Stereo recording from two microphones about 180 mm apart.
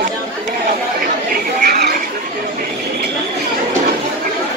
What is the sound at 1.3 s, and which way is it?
Chatter, 60° right (ahead or behind).